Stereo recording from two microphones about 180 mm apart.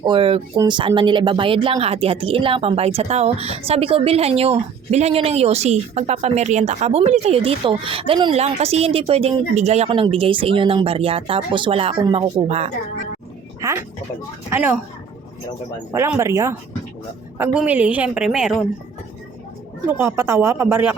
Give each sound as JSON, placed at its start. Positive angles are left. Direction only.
{"t": 0.0, "sound": "speech", "side_deg": -30}
{"t": 13.6, "sound": "music", "side_deg": -15}
{"t": 14.5, "sound": "a woman's voice", "side_deg": -10}
{"t": 15.9, "sound": "a woman's voice", "side_deg": -15}
{"t": 19.9, "sound": "a woman's voice", "side_deg": -15}